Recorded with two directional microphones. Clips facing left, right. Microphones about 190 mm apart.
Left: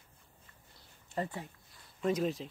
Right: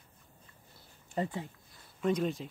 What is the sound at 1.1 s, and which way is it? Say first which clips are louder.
Speech: right 3 dB; 20° right (ahead or behind).